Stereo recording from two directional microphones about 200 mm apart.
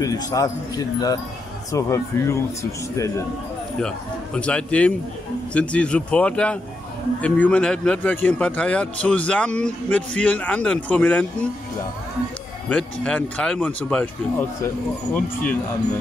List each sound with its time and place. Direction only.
0.0 s speech: 15° left (ahead or behind)
3.8 s a man's voice: 5° left (ahead or behind)
12.6 s speech: 5° left (ahead or behind)